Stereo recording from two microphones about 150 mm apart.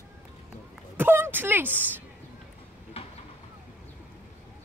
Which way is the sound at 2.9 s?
40° left (ahead or behind).